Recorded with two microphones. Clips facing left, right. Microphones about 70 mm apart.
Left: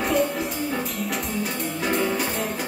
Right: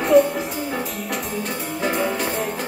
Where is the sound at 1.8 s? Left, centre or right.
Centre.